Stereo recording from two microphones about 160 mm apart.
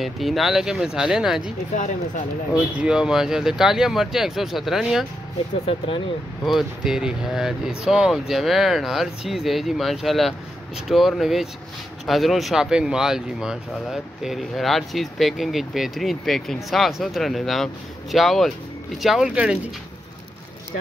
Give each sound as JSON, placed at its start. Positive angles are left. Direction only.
{"t": 0.0, "sound": "speech", "side_deg": 0}
{"t": 1.7, "sound": "speech", "side_deg": 45}
{"t": 2.8, "sound": "speech", "side_deg": -5}
{"t": 5.7, "sound": "speech", "side_deg": 35}
{"t": 6.4, "sound": "speech", "side_deg": 0}